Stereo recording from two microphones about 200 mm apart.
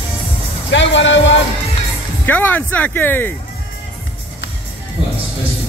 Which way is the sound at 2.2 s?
10° left (ahead or behind).